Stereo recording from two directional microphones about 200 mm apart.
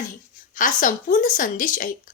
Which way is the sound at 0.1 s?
40° left (ahead or behind).